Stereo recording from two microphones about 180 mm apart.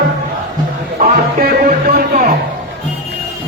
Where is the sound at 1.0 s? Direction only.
50° right (ahead or behind).